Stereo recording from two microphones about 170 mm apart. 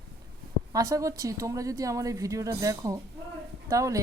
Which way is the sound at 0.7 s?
20° right (ahead or behind).